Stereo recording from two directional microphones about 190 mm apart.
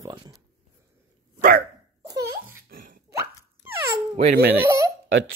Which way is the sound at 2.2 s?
50° right (ahead or behind).